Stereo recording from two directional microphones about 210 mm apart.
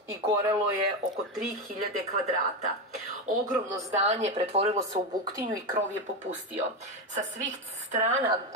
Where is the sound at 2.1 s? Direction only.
35° right (ahead or behind).